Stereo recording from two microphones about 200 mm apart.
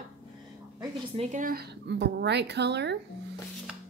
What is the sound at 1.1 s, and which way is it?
A woman's voice, 40° right (ahead or behind).